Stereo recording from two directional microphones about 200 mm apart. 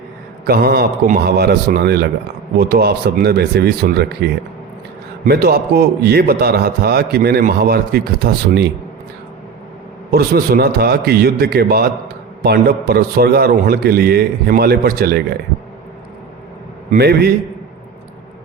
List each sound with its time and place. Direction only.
0.4 s a man's voice: 50° right (ahead or behind)
10.1 s a man's voice: 50° right (ahead or behind)
16.9 s a man's voice: 50° right (ahead or behind)